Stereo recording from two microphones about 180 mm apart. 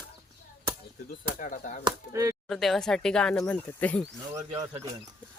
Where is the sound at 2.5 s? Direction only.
Centre (ahead or behind).